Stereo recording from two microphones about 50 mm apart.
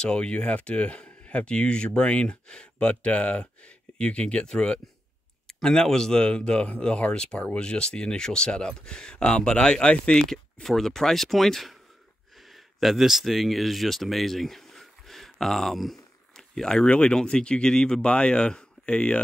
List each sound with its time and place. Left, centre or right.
0.0 s speech: centre
10.3 s speech: centre